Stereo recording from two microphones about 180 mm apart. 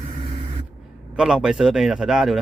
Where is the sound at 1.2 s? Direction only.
5° right (ahead or behind).